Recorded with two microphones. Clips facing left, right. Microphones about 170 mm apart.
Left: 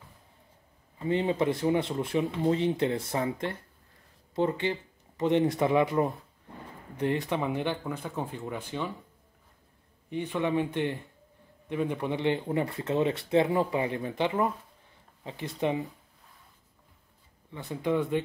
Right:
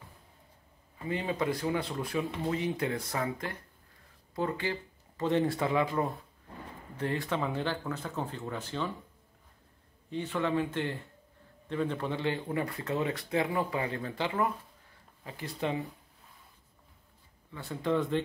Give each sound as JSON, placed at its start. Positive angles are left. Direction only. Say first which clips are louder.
{"t": 0.9, "sound": "speech", "louder": "left 6 dB", "side_deg": 25}
{"t": 10.0, "sound": "speech", "louder": "left 2 dB", "side_deg": 15}
{"t": 17.5, "sound": "speech", "louder": "left 2 dB", "side_deg": 15}